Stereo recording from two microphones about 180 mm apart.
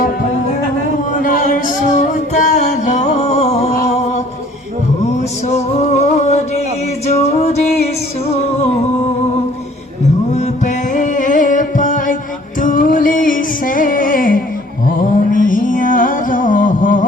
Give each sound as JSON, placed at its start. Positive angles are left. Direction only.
{"t": 1.1, "sound": "music", "side_deg": 50}
{"t": 10.3, "sound": "music", "side_deg": 40}